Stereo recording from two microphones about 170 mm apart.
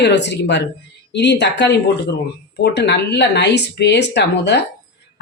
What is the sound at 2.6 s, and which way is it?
Speech, 80° left.